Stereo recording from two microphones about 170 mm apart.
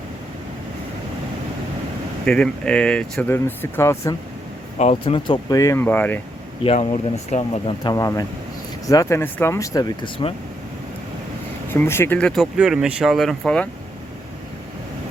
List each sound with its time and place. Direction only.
2.2 s speech: 5° left (ahead or behind)
4.8 s speech: 35° left (ahead or behind); by 6.1 s 10° left (ahead or behind)
6.7 s speech: 40° left (ahead or behind)
7.9 s speech: 20° left (ahead or behind)
11.7 s speech: 15° left (ahead or behind)